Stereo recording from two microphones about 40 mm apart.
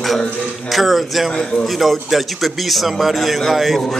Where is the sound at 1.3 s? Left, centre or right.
Centre.